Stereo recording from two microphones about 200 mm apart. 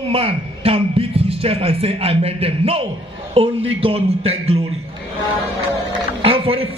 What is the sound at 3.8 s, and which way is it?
Speech, 30° right (ahead or behind).